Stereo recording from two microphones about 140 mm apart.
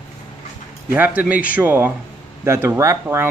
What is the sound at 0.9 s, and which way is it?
Speech, 10° right (ahead or behind).